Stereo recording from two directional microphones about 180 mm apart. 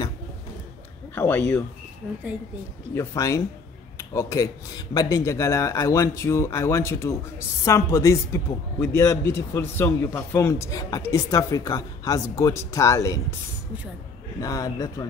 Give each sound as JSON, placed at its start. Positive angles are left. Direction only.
{"t": 1.1, "sound": "speech", "side_deg": 10}
{"t": 2.9, "sound": "a man's voice", "side_deg": 15}
{"t": 14.4, "sound": "a man's voice", "side_deg": 20}